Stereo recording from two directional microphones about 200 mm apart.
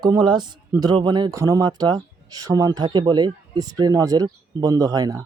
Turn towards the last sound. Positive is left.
turn(degrees=-15)  # may be behind; listen again after turning